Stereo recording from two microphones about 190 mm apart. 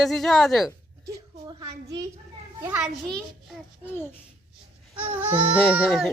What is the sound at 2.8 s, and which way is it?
Speech, 5° left (ahead or behind).